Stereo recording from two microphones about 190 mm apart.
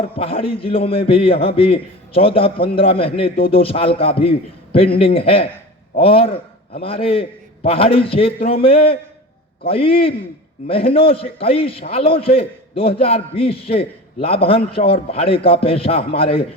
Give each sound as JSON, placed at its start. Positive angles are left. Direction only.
{"t": 0.2, "sound": "a man's voice", "side_deg": 30}